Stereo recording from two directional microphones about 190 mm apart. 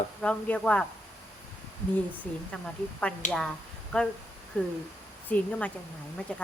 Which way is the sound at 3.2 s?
40° left (ahead or behind).